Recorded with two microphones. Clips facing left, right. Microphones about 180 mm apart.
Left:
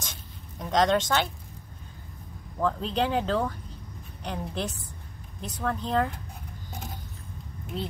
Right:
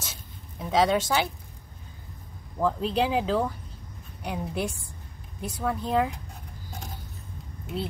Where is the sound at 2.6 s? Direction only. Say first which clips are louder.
Right 2 dB; 5° right (ahead or behind).